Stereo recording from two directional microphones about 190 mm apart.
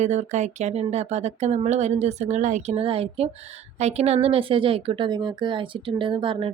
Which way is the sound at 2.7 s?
30° right (ahead or behind).